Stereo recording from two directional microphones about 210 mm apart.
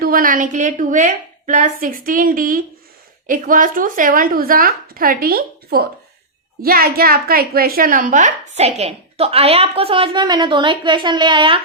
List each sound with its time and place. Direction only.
0.0 s a woman's voice: 40° right (ahead or behind); by 11.6 s 25° right (ahead or behind)